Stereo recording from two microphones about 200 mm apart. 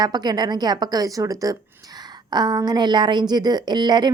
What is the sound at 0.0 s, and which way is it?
A woman's voice, 20° right (ahead or behind).